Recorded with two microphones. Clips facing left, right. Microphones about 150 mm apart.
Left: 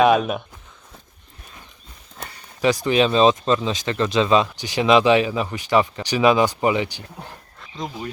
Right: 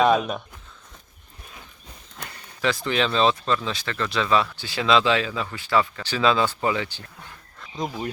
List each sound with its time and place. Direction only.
0.0 s speech: centre (ahead or behind)
2.6 s speech: 15° left (ahead or behind)